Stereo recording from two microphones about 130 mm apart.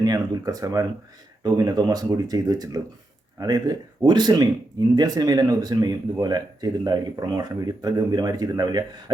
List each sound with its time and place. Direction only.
0.0 s speech: 30° right (ahead or behind)